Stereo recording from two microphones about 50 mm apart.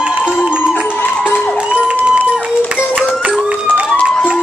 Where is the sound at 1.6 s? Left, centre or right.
Right.